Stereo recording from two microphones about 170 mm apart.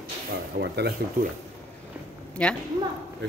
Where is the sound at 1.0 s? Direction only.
70° right (ahead or behind).